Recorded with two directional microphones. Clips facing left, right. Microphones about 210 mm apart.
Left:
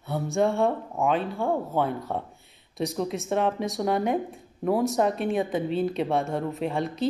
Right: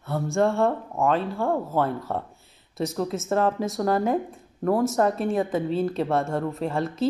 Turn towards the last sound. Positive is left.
turn(degrees=0)  # may be behind; listen again after turning